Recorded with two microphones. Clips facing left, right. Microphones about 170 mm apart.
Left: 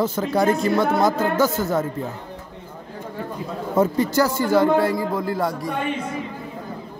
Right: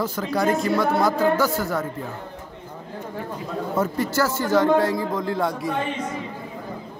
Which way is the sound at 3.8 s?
20° left (ahead or behind).